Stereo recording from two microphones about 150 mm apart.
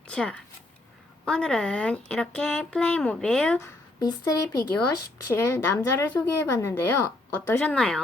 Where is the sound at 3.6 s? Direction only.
25° left (ahead or behind).